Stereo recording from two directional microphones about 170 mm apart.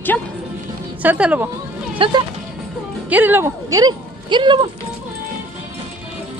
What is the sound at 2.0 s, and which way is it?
Speech, 30° right (ahead or behind).